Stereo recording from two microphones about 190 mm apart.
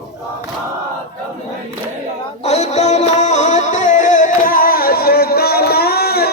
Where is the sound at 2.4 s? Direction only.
35° left (ahead or behind).